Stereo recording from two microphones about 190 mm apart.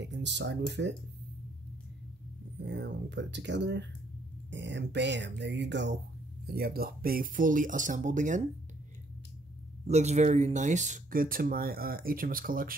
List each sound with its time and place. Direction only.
0.0 s speech: 65° right (ahead or behind)
2.6 s speech: 65° right (ahead or behind)
6.4 s speech: 55° right (ahead or behind)
9.8 s speech: 35° right (ahead or behind)